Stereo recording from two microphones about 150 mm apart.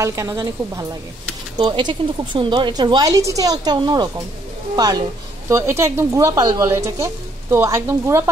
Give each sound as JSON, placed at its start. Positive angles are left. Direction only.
{"t": 0.0, "sound": "a woman's voice", "side_deg": -20}
{"t": 1.6, "sound": "a woman's voice", "side_deg": -30}